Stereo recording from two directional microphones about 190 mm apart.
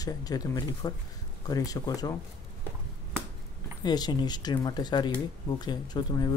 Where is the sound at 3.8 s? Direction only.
20° left (ahead or behind).